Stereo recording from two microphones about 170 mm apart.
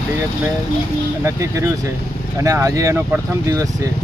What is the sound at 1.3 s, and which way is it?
Speech, 20° right (ahead or behind).